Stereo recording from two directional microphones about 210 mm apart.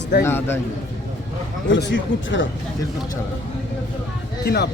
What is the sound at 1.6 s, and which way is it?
Speech, 55° left (ahead or behind).